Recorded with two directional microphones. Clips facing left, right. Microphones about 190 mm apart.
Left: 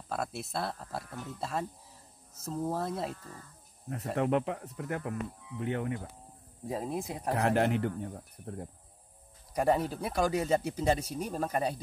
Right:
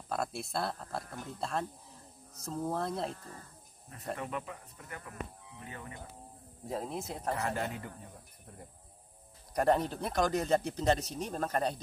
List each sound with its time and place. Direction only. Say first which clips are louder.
0.1 s speech: even; centre (ahead or behind)
4.1 s speech: left 9 dB; 75° left (ahead or behind)
6.7 s speech: left 3 dB; 10° left (ahead or behind)
7.3 s speech: left 8 dB; 80° left
9.5 s speech: left 1 dB; 5° left (ahead or behind)